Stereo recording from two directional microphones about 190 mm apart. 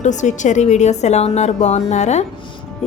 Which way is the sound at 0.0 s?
40° left (ahead or behind).